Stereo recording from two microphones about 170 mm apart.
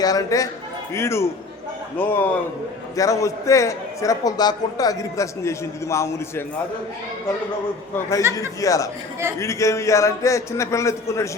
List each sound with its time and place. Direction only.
0.0 s a man's voice: 20° left (ahead or behind)
8.3 s a man's voice: 20° left (ahead or behind)